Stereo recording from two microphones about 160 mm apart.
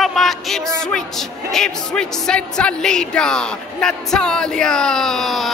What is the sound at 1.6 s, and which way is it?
Speech, 5° left (ahead or behind).